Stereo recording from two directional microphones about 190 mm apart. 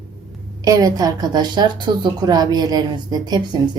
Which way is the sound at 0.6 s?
20° right (ahead or behind).